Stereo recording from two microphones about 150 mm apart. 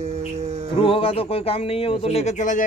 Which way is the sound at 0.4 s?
50° right (ahead or behind).